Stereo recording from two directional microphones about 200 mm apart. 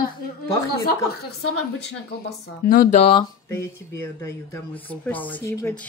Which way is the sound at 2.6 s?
45° left (ahead or behind).